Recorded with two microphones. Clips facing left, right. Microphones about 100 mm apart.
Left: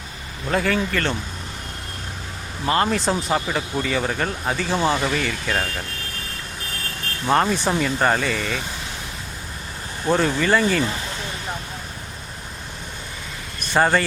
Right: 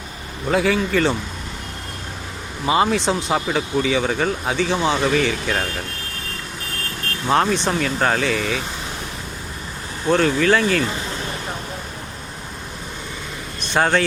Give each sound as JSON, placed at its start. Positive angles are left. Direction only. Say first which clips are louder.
{"t": 0.5, "sound": "speech", "louder": "right 3 dB", "side_deg": 0}
{"t": 2.6, "sound": "speech", "louder": "right 2 dB", "side_deg": -10}
{"t": 7.3, "sound": "speech", "louder": "right 1 dB", "side_deg": 0}
{"t": 10.1, "sound": "speech", "louder": "right 2 dB", "side_deg": 5}
{"t": 13.7, "sound": "speech", "louder": "even", "side_deg": 5}